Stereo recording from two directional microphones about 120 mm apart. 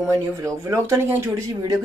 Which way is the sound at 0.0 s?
25° right (ahead or behind).